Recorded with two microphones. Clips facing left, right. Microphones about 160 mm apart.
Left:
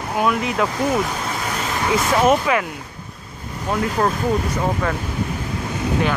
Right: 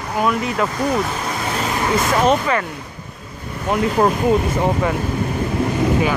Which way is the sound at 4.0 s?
20° right (ahead or behind).